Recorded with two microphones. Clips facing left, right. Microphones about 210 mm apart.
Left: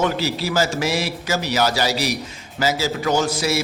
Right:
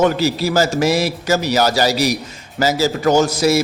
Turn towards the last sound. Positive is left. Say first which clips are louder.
# right 6 dB
turn(degrees=-40)  # may be behind; listen again after turning